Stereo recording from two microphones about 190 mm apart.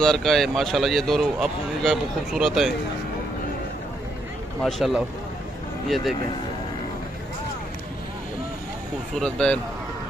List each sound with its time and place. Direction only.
0.0 s speech: centre (ahead or behind)
4.6 s speech: centre (ahead or behind)
9.1 s speech: 5° left (ahead or behind)